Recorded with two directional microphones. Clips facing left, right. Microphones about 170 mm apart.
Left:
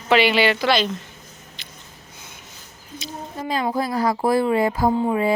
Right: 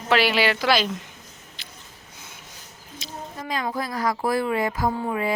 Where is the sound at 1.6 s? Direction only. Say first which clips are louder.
Left 1 dB; 5° right (ahead or behind).